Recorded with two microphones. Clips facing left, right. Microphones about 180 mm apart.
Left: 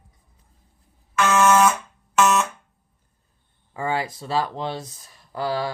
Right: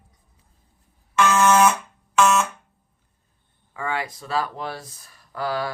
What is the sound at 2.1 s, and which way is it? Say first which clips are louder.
Fire alarm: even; centre (ahead or behind).